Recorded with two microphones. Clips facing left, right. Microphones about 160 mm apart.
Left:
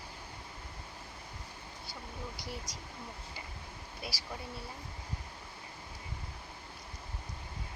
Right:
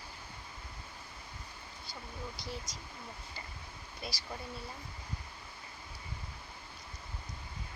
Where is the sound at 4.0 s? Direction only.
10° left (ahead or behind).